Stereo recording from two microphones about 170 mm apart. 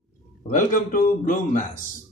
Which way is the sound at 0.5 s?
50° left (ahead or behind).